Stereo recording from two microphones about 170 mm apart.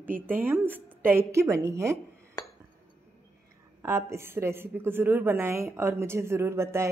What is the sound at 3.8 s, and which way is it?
A woman's voice, 15° right (ahead or behind).